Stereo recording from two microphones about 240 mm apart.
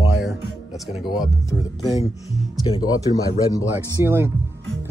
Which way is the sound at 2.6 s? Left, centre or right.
Centre.